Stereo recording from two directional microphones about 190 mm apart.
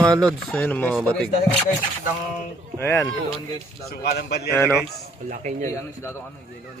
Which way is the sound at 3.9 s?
55° left (ahead or behind).